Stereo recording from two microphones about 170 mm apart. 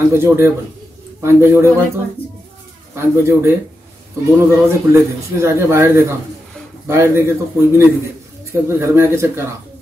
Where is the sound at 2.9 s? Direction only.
15° right (ahead or behind).